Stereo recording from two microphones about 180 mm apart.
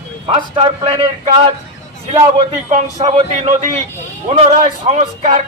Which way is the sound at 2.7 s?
40° right (ahead or behind).